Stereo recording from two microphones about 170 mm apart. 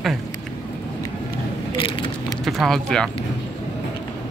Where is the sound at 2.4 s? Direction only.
Centre (ahead or behind).